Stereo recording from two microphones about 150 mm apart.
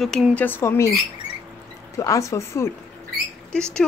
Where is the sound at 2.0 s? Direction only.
20° left (ahead or behind).